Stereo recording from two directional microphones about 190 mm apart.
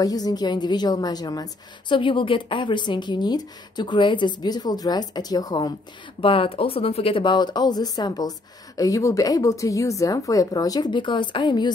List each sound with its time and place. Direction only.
0.0 s a woman's voice: 20° left (ahead or behind)